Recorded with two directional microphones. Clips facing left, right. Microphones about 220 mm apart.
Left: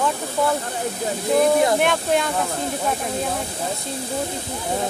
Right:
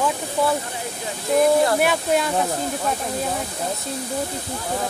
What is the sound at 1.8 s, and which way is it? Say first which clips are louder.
Speech: even; 5° right (ahead or behind).